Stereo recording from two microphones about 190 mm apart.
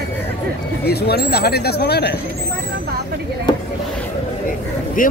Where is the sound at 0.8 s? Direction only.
55° left (ahead or behind).